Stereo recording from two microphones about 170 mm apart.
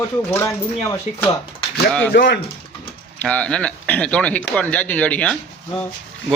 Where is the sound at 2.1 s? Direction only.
80° left.